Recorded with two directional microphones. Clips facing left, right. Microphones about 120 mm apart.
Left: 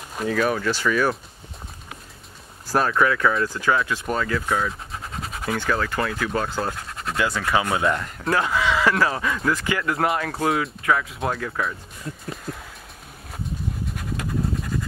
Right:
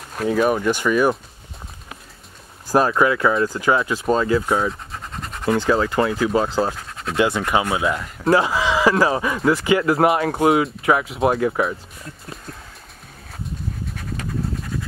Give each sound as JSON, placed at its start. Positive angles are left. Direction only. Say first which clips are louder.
{"t": 0.5, "sound": "speech", "louder": "right 4 dB", "side_deg": -15}
{"t": 2.7, "sound": "speech", "louder": "right 4 dB", "side_deg": -15}
{"t": 3.3, "sound": "speech", "louder": "right 3 dB", "side_deg": -35}
{"t": 5.1, "sound": "scratch", "louder": "right 7 dB", "side_deg": 5}
{"t": 5.6, "sound": "speech", "louder": "right 5 dB", "side_deg": -25}
{"t": 6.7, "sound": "scratch", "louder": "right 1 dB", "side_deg": 0}
{"t": 7.2, "sound": "speech", "louder": "right 4 dB", "side_deg": -20}
{"t": 7.6, "sound": "speech", "louder": "right 1 dB", "side_deg": -5}
{"t": 8.2, "sound": "speech", "louder": "right 7 dB", "side_deg": -30}
{"t": 14.1, "sound": "pant", "louder": "left 1 dB", "side_deg": 0}